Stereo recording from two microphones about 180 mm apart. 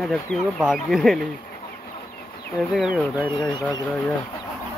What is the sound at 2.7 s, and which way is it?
Speech, 5° right (ahead or behind).